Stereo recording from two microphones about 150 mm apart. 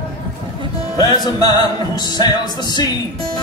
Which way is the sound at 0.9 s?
25° left (ahead or behind).